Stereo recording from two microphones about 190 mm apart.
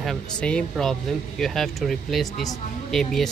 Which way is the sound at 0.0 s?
5° left (ahead or behind).